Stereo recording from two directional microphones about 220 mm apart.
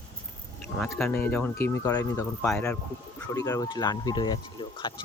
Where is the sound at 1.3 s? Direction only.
10° left (ahead or behind).